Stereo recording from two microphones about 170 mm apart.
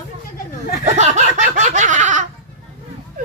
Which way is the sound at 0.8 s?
45° right (ahead or behind).